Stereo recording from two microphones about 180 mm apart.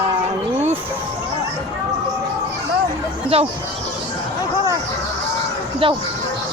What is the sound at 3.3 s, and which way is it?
Speech, 35° right (ahead or behind).